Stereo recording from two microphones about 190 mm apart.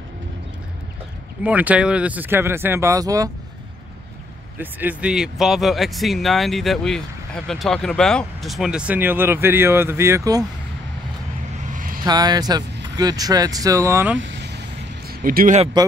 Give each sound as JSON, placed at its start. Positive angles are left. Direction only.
{"t": 1.4, "sound": "speech", "side_deg": -10}
{"t": 4.6, "sound": "speech", "side_deg": -10}
{"t": 11.7, "sound": "vehicle", "side_deg": -45}
{"t": 12.0, "sound": "speech", "side_deg": -20}
{"t": 14.2, "sound": "vehicle", "side_deg": -65}
{"t": 15.0, "sound": "speech", "side_deg": -50}